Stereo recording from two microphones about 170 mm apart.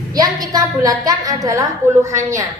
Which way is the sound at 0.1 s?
20° right (ahead or behind).